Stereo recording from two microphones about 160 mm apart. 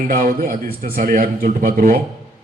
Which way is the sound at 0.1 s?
60° right (ahead or behind).